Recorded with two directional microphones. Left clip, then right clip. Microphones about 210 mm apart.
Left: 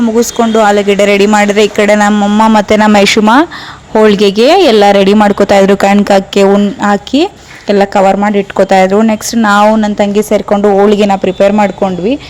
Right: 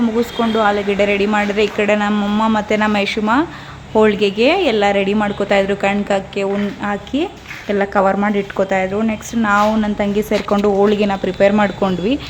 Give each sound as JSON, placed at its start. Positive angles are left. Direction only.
{"t": 0.3, "sound": "speech", "side_deg": 30}
{"t": 2.1, "sound": "speech", "side_deg": 25}
{"t": 2.6, "sound": "speech", "side_deg": 40}
{"t": 6.5, "sound": "speech", "side_deg": 40}
{"t": 9.7, "sound": "speech", "side_deg": 30}